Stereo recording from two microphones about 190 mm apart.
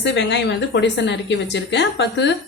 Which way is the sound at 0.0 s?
65° left (ahead or behind).